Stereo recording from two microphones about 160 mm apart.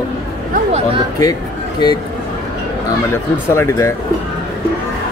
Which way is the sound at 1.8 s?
25° left (ahead or behind).